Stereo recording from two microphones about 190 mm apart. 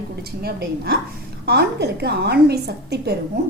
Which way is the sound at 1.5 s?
60° right (ahead or behind).